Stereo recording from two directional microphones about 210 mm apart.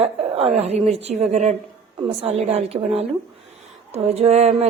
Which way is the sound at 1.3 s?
30° right (ahead or behind).